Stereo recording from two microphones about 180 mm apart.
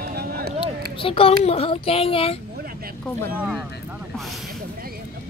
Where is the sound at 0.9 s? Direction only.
30° left (ahead or behind).